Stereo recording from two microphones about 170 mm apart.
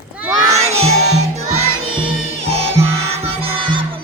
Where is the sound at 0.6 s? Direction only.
40° right (ahead or behind).